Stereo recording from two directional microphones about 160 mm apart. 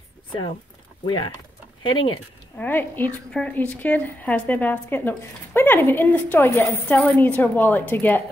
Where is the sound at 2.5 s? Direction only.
10° left (ahead or behind).